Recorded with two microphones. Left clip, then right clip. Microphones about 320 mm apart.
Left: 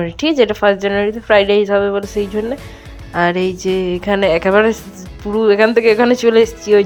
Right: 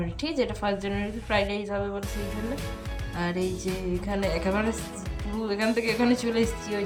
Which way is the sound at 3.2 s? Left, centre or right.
Left.